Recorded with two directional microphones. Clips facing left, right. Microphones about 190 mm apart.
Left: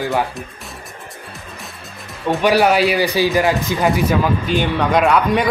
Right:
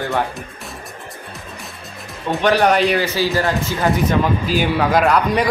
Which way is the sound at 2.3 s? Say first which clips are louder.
Left 1 dB; 5° left (ahead or behind).